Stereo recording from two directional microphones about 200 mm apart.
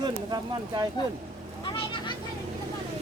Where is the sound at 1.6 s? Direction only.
25° left (ahead or behind).